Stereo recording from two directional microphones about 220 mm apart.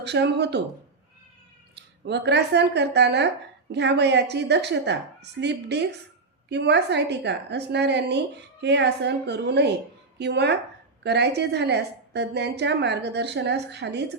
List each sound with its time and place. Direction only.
0.0 s a woman's voice: 50° right (ahead or behind)
1.7 s a woman's voice: 50° right (ahead or behind)